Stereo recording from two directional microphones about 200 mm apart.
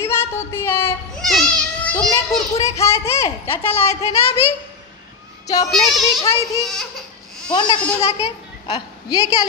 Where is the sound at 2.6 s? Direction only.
15° left (ahead or behind).